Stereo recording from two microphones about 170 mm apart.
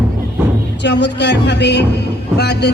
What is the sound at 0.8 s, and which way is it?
A man's voice, 90° left.